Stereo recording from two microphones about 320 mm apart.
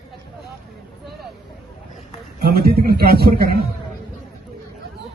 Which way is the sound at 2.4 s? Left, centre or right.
Right.